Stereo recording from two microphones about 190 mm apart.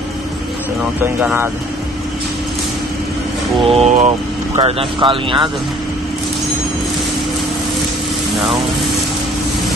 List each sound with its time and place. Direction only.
1.0 s speech: 10° right (ahead or behind)
3.6 s speech: 35° right (ahead or behind)